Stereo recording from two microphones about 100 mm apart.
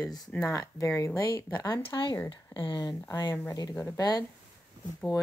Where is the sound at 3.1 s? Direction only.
40° left (ahead or behind).